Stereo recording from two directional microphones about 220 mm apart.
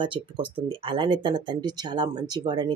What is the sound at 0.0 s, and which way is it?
Speech, 20° right (ahead or behind).